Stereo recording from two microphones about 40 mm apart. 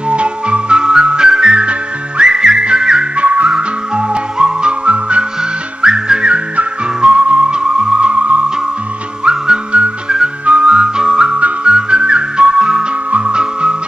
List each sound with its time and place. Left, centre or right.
0.1 s music: right
3.2 s music: right
3.4 s music: right
5.8 s music: centre
9.2 s whistle: centre
9.7 s whistle: right
10.4 s music: right